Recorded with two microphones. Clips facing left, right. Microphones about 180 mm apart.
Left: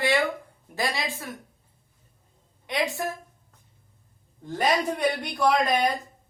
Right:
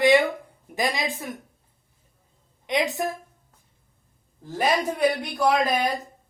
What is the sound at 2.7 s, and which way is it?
Speech, 20° right (ahead or behind).